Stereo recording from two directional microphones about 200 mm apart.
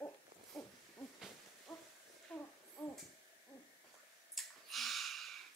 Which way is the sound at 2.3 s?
10° left (ahead or behind).